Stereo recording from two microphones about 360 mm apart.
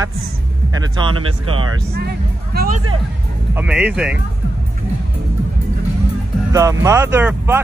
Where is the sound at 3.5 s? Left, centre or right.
Centre.